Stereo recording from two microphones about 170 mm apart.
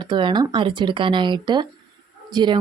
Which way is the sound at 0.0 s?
25° right (ahead or behind).